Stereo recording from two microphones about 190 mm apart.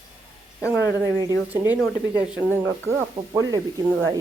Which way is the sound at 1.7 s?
20° left (ahead or behind).